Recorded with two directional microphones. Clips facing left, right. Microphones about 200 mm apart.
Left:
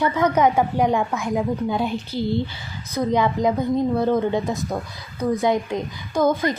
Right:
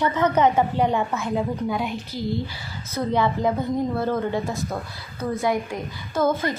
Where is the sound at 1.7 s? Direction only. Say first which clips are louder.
Left 3 dB; 30° left (ahead or behind).